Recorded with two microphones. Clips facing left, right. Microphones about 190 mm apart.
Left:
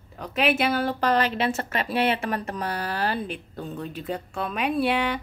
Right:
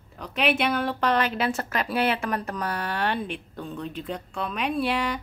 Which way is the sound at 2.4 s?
30° left (ahead or behind).